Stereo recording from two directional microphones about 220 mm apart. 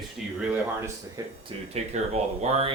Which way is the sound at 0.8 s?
15° right (ahead or behind).